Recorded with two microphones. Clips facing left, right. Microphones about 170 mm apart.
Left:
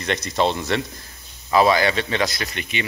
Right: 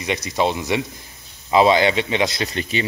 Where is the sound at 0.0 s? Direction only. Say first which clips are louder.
Even; 10° right (ahead or behind).